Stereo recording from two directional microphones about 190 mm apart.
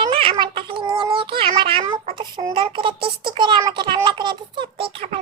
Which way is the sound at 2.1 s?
25° right (ahead or behind).